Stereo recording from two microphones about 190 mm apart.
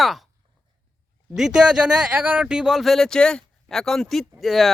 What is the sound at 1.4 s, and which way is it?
Speech, 5° right (ahead or behind).